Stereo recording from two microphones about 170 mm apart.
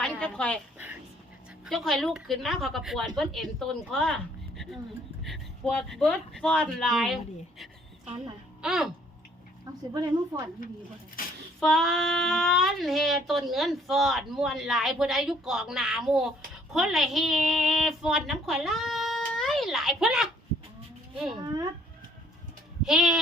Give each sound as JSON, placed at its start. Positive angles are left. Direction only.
{"t": 0.0, "sound": "a sound", "side_deg": 5}
{"t": 1.6, "sound": "speech", "side_deg": 0}
{"t": 8.6, "sound": "speech", "side_deg": -5}
{"t": 9.9, "sound": "a woman's voice", "side_deg": -20}
{"t": 11.2, "sound": "a sound", "side_deg": 55}
{"t": 11.6, "sound": "speech", "side_deg": 0}
{"t": 21.4, "sound": "a woman's voice", "side_deg": -25}
{"t": 22.8, "sound": "speech", "side_deg": 0}